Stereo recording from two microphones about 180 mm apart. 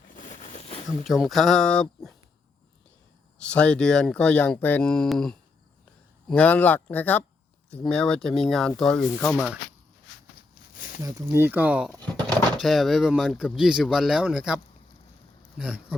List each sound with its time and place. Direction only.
0.1 s a sound: 40° left (ahead or behind)
0.9 s speech: centre (ahead or behind)
3.3 s speech: 5° left (ahead or behind)
11.0 s speech: 15° right (ahead or behind)